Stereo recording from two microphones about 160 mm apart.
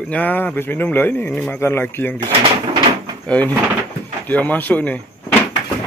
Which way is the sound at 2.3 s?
30° right (ahead or behind).